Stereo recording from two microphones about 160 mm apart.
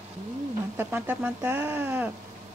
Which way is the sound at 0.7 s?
10° right (ahead or behind).